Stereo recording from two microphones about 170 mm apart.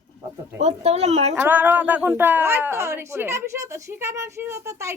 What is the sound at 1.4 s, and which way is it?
Speech, 10° right (ahead or behind).